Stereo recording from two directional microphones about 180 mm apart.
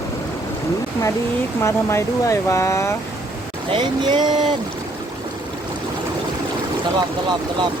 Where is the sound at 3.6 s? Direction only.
25° right (ahead or behind).